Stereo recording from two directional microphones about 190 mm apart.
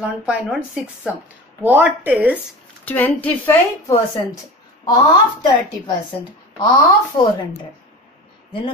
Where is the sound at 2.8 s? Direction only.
10° left (ahead or behind).